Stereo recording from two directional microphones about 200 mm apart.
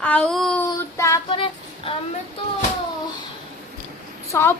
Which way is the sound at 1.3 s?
25° left (ahead or behind).